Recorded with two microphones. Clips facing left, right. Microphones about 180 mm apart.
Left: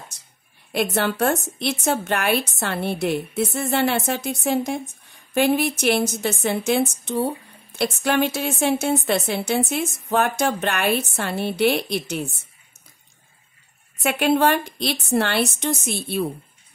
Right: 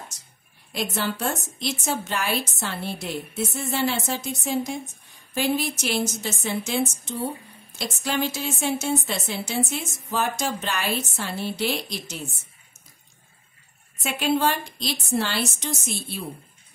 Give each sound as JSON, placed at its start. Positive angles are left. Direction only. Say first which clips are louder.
{"t": 0.7, "sound": "a woman's voice", "louder": "left 6 dB", "side_deg": 60}
{"t": 14.0, "sound": "a woman's voice", "louder": "left 5 dB", "side_deg": 60}